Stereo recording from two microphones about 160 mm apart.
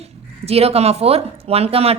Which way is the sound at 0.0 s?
40° right (ahead or behind).